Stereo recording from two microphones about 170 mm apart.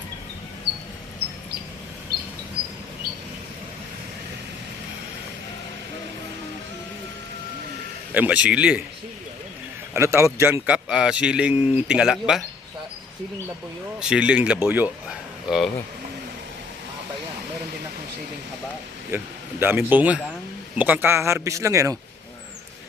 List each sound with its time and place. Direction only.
8.1 s speech: 10° right (ahead or behind)
9.9 s speech: 15° right (ahead or behind)
14.0 s speech: 5° right (ahead or behind)
19.1 s speech: 15° right (ahead or behind)